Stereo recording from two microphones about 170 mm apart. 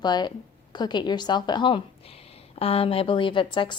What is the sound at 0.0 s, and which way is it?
A woman's voice, 25° left (ahead or behind).